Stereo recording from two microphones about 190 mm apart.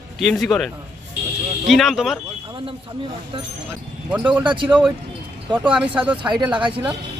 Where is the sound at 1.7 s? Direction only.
Centre (ahead or behind).